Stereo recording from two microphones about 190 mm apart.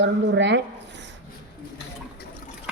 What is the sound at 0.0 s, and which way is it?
Speech, 70° right (ahead or behind).